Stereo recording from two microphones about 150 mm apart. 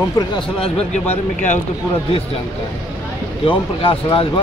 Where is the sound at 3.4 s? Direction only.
35° left (ahead or behind).